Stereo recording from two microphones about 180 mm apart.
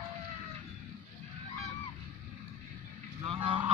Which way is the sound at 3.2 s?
30° right (ahead or behind).